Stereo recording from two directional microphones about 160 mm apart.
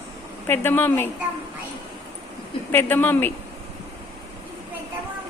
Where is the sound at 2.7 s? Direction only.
15° left (ahead or behind).